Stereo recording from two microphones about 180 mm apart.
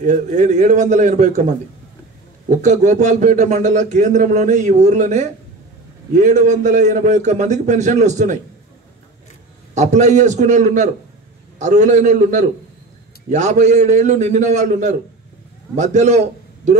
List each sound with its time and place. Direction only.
0.0 s a man's voice: 40° right (ahead or behind)
2.5 s a man's voice: 40° right (ahead or behind)
9.8 s a man's voice: 40° right (ahead or behind)